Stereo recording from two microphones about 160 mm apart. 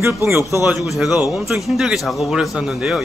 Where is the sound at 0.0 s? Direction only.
15° right (ahead or behind).